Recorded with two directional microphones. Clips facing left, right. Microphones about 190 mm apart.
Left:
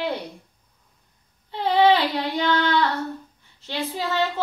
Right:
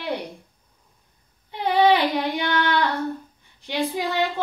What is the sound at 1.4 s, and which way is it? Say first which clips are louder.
Speech: even; 15° right (ahead or behind).